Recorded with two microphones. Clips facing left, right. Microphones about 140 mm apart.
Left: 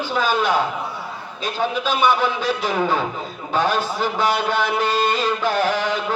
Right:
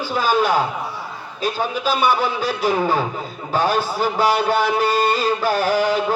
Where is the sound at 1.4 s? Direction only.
40° right (ahead or behind).